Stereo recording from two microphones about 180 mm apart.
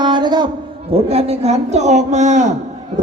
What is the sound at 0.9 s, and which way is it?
A man's voice, 35° right (ahead or behind).